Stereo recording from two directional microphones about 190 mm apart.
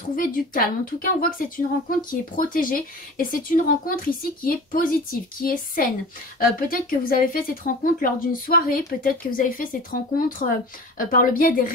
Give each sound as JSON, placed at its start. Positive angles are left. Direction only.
{"t": 0.1, "sound": "speech", "side_deg": 45}